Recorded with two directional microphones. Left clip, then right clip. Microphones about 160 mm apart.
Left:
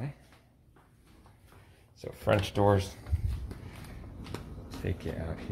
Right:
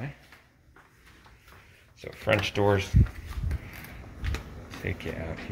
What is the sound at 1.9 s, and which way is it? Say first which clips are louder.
Speech: right 2 dB; 25° left (ahead or behind).